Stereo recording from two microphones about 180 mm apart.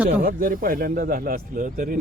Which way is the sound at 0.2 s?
55° right (ahead or behind).